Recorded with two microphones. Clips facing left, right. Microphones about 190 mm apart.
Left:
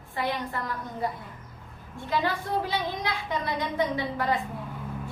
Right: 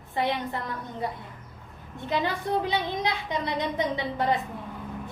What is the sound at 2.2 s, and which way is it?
A woman's voice, 20° right (ahead or behind).